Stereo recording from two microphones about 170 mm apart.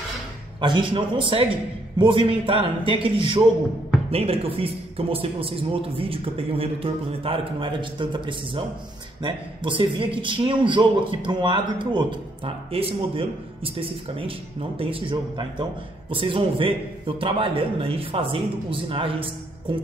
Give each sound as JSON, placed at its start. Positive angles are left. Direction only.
{"t": 0.6, "sound": "a man's voice", "side_deg": -30}